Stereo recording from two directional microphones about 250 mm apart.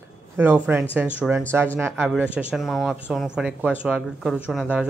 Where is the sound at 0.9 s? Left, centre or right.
Centre.